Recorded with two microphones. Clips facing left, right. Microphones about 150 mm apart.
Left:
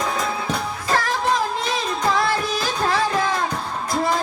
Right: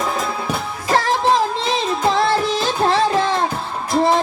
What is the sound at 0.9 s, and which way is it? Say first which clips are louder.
Music: right 5 dB; 30° right (ahead or behind).